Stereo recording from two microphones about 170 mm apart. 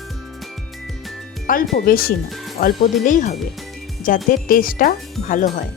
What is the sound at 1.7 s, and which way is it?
Speech, 60° left (ahead or behind).